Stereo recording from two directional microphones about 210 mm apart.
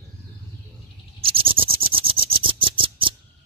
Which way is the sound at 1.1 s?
25° right (ahead or behind).